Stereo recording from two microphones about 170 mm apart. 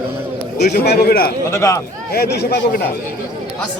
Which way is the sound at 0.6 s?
70° left (ahead or behind).